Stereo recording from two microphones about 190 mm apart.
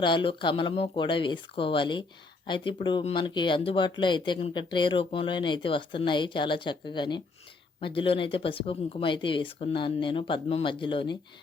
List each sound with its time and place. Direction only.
0.0 s speech: 25° left (ahead or behind)